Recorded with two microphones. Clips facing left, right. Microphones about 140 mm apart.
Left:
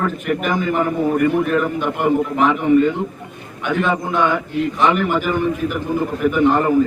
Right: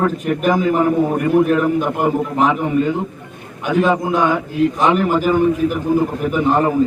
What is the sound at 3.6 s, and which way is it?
A man's voice, 40° right (ahead or behind).